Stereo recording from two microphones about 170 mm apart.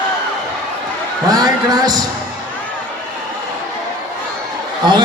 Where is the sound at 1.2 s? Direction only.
20° right (ahead or behind).